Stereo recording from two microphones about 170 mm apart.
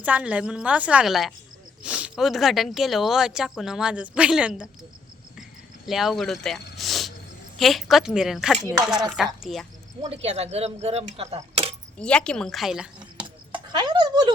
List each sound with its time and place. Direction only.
0.0 s a woman's voice: 10° right (ahead or behind)
5.4 s cricket: centre (ahead or behind)
7.6 s speech: centre (ahead or behind)
10.0 s speech: 35° right (ahead or behind)
11.9 s speech: 5° left (ahead or behind)
13.1 s a sound: 25° right (ahead or behind)